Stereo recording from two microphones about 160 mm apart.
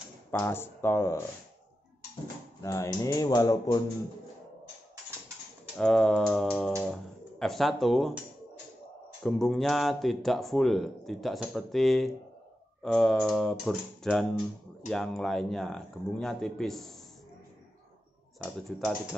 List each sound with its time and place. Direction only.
0.3 s speech: 15° left (ahead or behind)
2.6 s speech: 20° left (ahead or behind)
5.8 s speech: 5° left (ahead or behind)
9.2 s speech: centre (ahead or behind)